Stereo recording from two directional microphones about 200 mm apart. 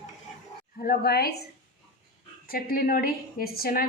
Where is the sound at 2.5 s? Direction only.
45° left (ahead or behind).